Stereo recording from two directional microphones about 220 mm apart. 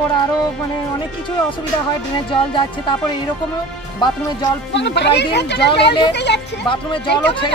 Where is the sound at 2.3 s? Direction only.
20° left (ahead or behind).